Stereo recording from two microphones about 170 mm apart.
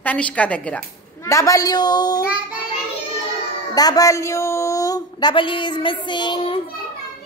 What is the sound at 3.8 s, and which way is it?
Speech, 20° left (ahead or behind).